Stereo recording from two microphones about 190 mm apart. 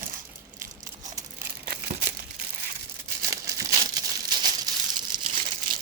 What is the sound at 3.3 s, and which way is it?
Crumpling, 15° right (ahead or behind).